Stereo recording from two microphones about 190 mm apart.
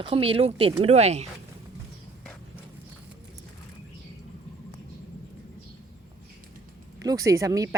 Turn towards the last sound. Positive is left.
turn(degrees=-15)  # may be behind; listen again after turning